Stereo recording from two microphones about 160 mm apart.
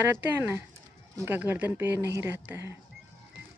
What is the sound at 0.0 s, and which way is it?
Speech, 10° right (ahead or behind).